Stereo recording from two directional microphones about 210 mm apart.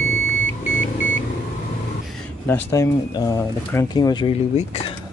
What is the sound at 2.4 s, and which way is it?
Speech, 10° left (ahead or behind).